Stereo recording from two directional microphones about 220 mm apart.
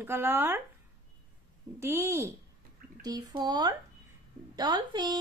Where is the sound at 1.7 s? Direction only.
10° right (ahead or behind).